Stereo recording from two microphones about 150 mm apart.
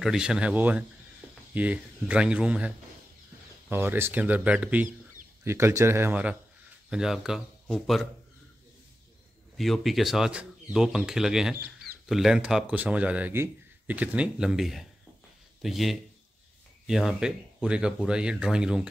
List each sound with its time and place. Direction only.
0.0 s a man's voice: 5° right (ahead or behind)
3.7 s a man's voice: 15° right (ahead or behind)
9.6 s a man's voice: centre (ahead or behind)